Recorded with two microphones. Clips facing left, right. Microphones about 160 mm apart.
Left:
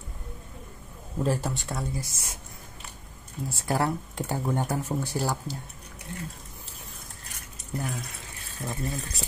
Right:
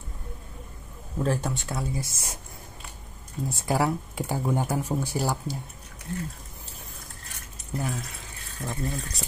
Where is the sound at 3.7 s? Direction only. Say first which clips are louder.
Right 1 dB; 5° right (ahead or behind).